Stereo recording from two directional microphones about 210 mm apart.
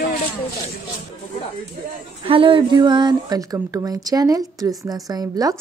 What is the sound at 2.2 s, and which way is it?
Speech, 25° right (ahead or behind).